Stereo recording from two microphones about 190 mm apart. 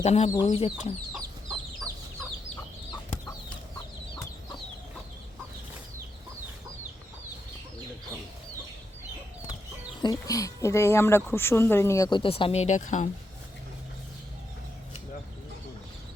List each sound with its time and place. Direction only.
0.0 s speech: 35° left (ahead or behind)
10.0 s speech: 20° left (ahead or behind); by 13.1 s 40° left (ahead or behind)